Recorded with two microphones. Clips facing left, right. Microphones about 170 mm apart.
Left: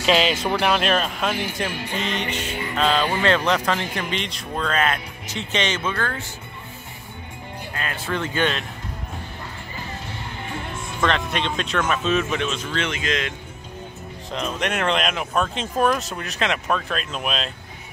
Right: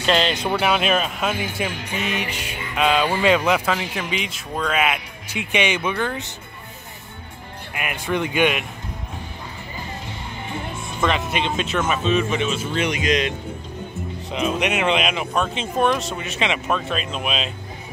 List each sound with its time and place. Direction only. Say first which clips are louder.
0.0 s speech: left 1 dB; 5° left (ahead or behind); by 6.3 s 20° right (ahead or behind)
7.7 s speech: right 3 dB; 15° right (ahead or behind)
11.0 s speech: right 1 dB; 5° right (ahead or behind)
12.7 s speech: right 6 dB; 15° right (ahead or behind)
14.3 s speech: right 3 dB; 5° right (ahead or behind)